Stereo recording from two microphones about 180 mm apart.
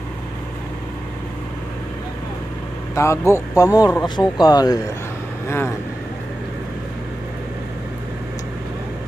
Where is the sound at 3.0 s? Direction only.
15° left (ahead or behind).